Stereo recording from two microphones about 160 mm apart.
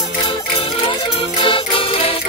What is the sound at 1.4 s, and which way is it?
Music, 35° left (ahead or behind).